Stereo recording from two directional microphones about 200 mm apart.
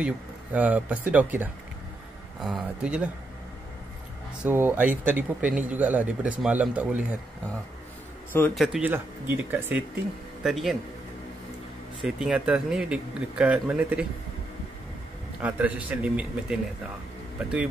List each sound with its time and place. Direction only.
0.0 s a man's voice: 5° right (ahead or behind)
4.4 s a man's voice: 10° right (ahead or behind)
8.5 s a man's voice: 5° right (ahead or behind)
12.0 s speech: 5° right (ahead or behind)
15.4 s a man's voice: 10° right (ahead or behind)